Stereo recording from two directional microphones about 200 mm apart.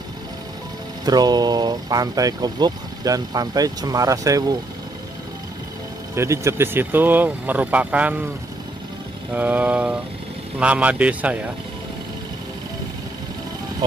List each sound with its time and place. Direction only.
1.0 s speech: 20° right (ahead or behind)
6.1 s speech: 15° right (ahead or behind)
9.3 s speech: 10° right (ahead or behind)